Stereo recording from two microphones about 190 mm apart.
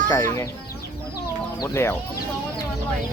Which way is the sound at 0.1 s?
15° left (ahead or behind).